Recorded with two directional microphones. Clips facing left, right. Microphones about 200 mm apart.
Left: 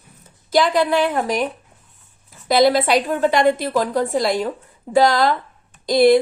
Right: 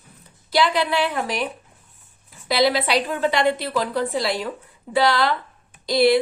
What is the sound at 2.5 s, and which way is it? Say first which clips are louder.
A woman's voice: left 5 dB; 45° left (ahead or behind).